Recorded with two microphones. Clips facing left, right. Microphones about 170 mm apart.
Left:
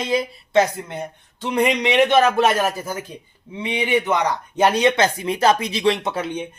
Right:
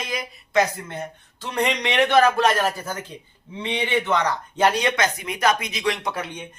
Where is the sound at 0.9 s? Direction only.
15° left (ahead or behind).